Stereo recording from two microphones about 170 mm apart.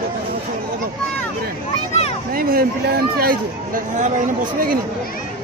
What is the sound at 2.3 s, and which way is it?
Speech, 60° right (ahead or behind).